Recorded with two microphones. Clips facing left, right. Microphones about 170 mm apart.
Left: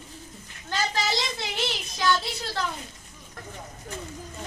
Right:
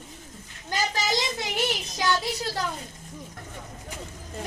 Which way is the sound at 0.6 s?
15° right (ahead or behind).